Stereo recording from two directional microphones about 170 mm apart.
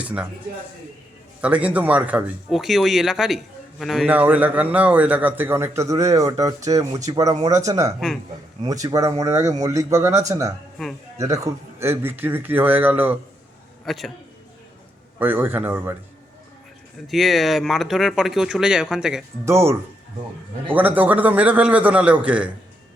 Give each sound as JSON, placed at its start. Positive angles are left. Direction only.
{"t": 0.0, "sound": "speech", "side_deg": -10}
{"t": 1.4, "sound": "a man's voice", "side_deg": -10}
{"t": 7.9, "sound": "speech", "side_deg": 0}
{"t": 8.6, "sound": "a man's voice", "side_deg": -20}
{"t": 13.8, "sound": "speech", "side_deg": 0}
{"t": 15.2, "sound": "a man's voice", "side_deg": -10}
{"t": 17.1, "sound": "speech", "side_deg": 0}
{"t": 19.5, "sound": "a man's voice", "side_deg": -15}
{"t": 20.7, "sound": "a man's voice", "side_deg": -10}